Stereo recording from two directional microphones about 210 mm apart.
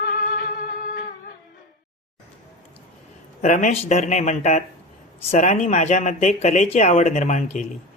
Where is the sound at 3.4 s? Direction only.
35° left (ahead or behind).